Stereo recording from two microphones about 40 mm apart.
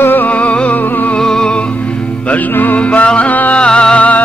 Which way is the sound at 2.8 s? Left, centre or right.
Left.